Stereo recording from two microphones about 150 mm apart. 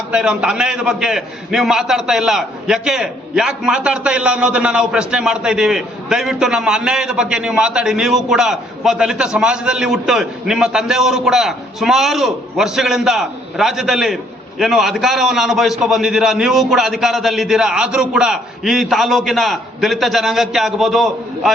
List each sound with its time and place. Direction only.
0.1 s a man's voice: 5° right (ahead or behind)